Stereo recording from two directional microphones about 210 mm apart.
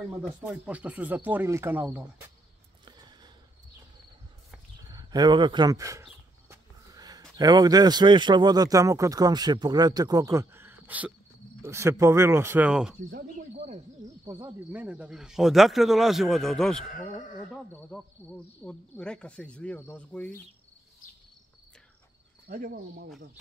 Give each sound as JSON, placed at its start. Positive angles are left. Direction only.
{"t": 0.2, "sound": "speech", "side_deg": -5}
{"t": 2.8, "sound": "sniff", "side_deg": -20}
{"t": 4.9, "sound": "speech", "side_deg": -20}
{"t": 14.2, "sound": "speech", "side_deg": -15}
{"t": 16.9, "sound": "speech", "side_deg": 35}
{"t": 17.7, "sound": "speech", "side_deg": 5}
{"t": 22.5, "sound": "cricket", "side_deg": -45}
{"t": 23.0, "sound": "speech", "side_deg": 0}